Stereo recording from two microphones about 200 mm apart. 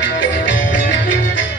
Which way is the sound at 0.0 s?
70° left (ahead or behind).